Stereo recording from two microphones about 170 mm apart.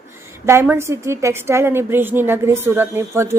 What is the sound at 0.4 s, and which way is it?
A woman's voice, 10° right (ahead or behind).